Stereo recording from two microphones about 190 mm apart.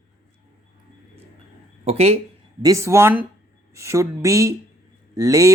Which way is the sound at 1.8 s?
35° right (ahead or behind).